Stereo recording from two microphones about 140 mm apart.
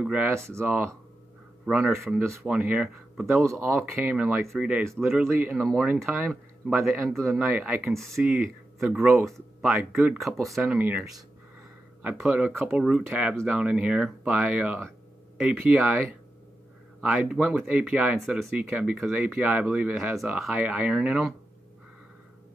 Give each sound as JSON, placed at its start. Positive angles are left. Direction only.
{"t": 0.0, "sound": "speech", "side_deg": -10}
{"t": 1.7, "sound": "speech", "side_deg": 0}
{"t": 3.4, "sound": "speech", "side_deg": -15}
{"t": 5.3, "sound": "speech", "side_deg": -10}
{"t": 5.6, "sound": "speech", "side_deg": 0}
{"t": 7.9, "sound": "speech", "side_deg": 0}
{"t": 10.8, "sound": "speech", "side_deg": -10}